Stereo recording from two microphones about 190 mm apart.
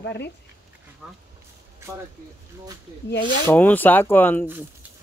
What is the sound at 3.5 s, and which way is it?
Speech, 10° left (ahead or behind).